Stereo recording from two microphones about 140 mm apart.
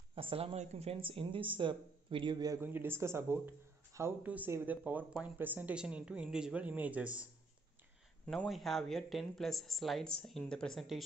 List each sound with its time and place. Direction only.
0.1 s speech: 40° right (ahead or behind)
0.6 s speech: 50° right (ahead or behind); by 2.6 s 30° right (ahead or behind)
2.6 s speech: 15° right (ahead or behind)
8.3 s speech: centre (ahead or behind)